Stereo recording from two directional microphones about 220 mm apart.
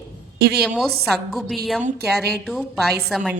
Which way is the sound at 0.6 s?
Centre (ahead or behind).